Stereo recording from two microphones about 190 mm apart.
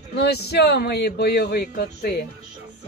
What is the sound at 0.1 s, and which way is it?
Speech, 60° left (ahead or behind).